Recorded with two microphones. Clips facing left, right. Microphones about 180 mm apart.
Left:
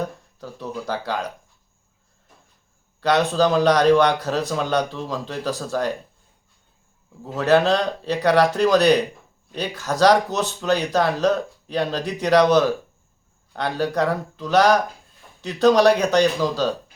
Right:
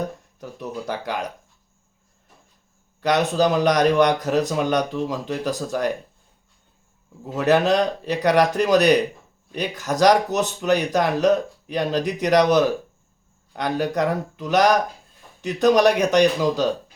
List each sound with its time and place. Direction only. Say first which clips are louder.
0.3 s speech: left 2 dB; 20° right (ahead or behind)
3.0 s speech: left 1 dB; 15° right (ahead or behind)
7.3 s speech: even; 15° right (ahead or behind)